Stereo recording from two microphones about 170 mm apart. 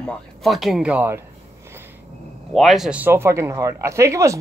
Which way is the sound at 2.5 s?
Centre (ahead or behind).